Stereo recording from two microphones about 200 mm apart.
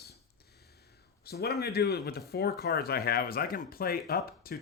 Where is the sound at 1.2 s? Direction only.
50° left (ahead or behind).